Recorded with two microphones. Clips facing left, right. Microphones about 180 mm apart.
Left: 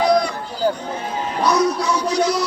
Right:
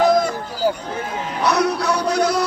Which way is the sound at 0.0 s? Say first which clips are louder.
Right 1 dB; 50° right (ahead or behind).